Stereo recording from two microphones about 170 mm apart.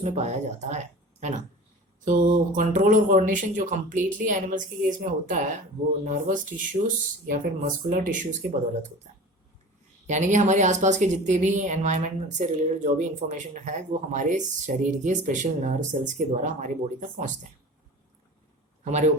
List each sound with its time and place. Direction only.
0.0 s a woman's voice: 45° right (ahead or behind)
2.0 s a woman's voice: 50° right (ahead or behind)
10.1 s a woman's voice: 45° right (ahead or behind)
18.9 s a woman's voice: 45° right (ahead or behind)